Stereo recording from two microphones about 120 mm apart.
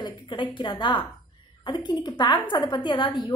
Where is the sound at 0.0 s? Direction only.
40° left (ahead or behind).